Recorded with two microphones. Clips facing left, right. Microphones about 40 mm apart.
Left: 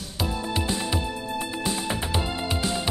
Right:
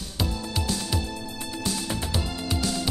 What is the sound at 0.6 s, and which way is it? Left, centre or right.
Music, left.